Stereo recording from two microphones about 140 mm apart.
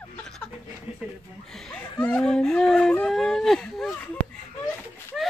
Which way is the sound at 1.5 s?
5° left (ahead or behind).